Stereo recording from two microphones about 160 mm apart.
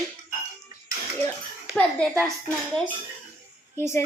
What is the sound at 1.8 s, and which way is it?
Speech, 5° left (ahead or behind).